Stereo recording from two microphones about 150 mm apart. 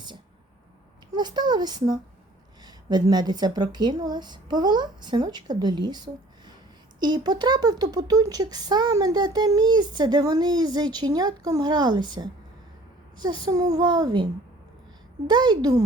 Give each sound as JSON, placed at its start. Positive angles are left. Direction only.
{"t": 1.1, "sound": "speech", "side_deg": -30}
{"t": 7.0, "sound": "speech", "side_deg": -30}
{"t": 15.3, "sound": "speech", "side_deg": -30}